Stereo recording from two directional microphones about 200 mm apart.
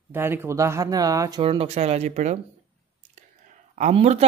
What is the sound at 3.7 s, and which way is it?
Speech, 35° right (ahead or behind).